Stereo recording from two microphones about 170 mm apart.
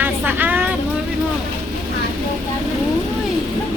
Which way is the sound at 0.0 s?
10° right (ahead or behind).